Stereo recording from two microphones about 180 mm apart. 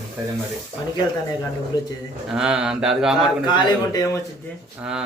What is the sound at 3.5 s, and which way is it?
Speech, 20° left (ahead or behind).